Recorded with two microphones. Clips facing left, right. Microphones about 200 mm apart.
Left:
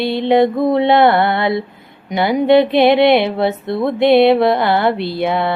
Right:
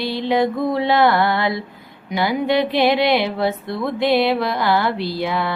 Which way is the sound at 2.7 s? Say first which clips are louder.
Left 5 dB; 55° left (ahead or behind).